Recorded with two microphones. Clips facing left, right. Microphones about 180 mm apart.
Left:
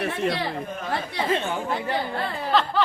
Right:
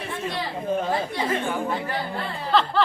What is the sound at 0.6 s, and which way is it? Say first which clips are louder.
Speech: right 8 dB; 30° right (ahead or behind).